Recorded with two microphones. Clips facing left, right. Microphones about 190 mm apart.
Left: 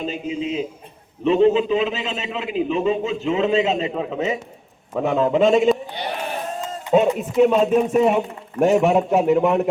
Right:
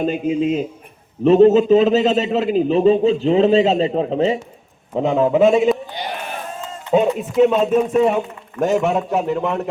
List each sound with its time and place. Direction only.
0.0 s a man's voice: 55° right (ahead or behind); by 4.4 s 30° right (ahead or behind)
4.9 s a man's voice: 15° right (ahead or behind)
5.4 s speech: 5° right (ahead or behind)
6.9 s a man's voice: centre (ahead or behind)